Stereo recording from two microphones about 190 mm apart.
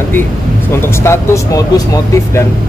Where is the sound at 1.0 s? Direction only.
15° left (ahead or behind).